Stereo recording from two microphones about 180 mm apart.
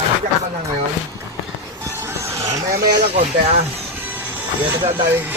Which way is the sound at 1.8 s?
15° right (ahead or behind).